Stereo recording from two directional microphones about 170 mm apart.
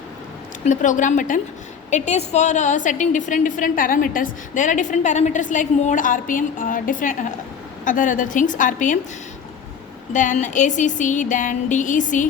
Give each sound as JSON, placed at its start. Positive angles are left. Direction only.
{"t": 0.6, "sound": "a woman's voice", "side_deg": 45}
{"t": 10.1, "sound": "a woman's voice", "side_deg": 45}